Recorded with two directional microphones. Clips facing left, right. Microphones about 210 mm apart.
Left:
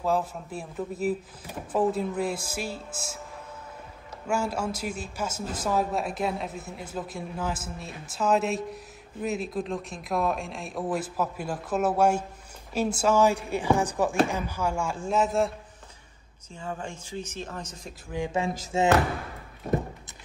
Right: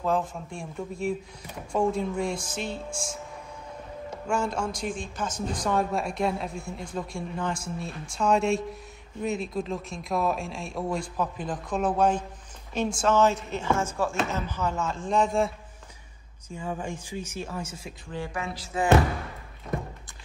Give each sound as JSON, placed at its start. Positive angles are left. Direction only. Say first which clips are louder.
{"t": 0.0, "sound": "speech", "louder": "even", "side_deg": 5}
{"t": 4.3, "sound": "speech", "louder": "even", "side_deg": 5}
{"t": 16.5, "sound": "speech", "louder": "right 3 dB", "side_deg": -15}
{"t": 18.1, "sound": "speech", "louder": "left 5 dB", "side_deg": 15}
{"t": 18.7, "sound": "speech", "louder": "left 3 dB", "side_deg": 25}